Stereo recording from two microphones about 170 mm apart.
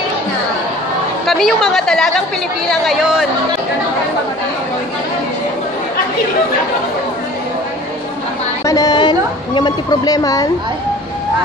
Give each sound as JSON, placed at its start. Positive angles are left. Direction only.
{"t": 1.2, "sound": "a woman's voice", "side_deg": 0}
{"t": 8.6, "sound": "a woman's voice", "side_deg": 20}